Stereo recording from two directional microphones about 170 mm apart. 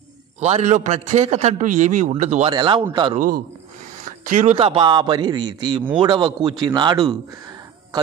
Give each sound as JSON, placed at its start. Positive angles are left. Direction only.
{"t": 0.4, "sound": "a man's voice", "side_deg": -40}
{"t": 2.5, "sound": "a man's voice", "side_deg": -25}
{"t": 3.2, "sound": "a man's voice", "side_deg": -55}
{"t": 4.0, "sound": "a man's voice", "side_deg": -45}